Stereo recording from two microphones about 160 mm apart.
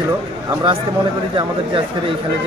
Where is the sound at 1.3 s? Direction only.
30° right (ahead or behind).